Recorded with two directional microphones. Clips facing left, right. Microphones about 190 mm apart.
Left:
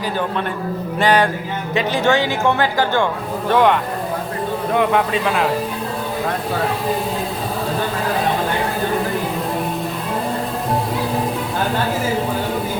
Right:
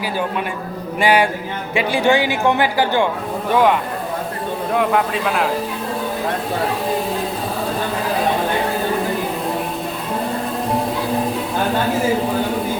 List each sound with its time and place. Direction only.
0.9 s a man's voice: 10° right (ahead or behind)